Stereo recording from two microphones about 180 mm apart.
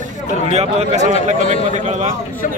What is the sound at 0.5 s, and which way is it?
A man's voice, 35° right (ahead or behind).